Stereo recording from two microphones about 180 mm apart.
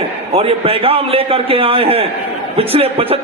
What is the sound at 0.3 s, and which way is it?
A man's voice, 30° right (ahead or behind).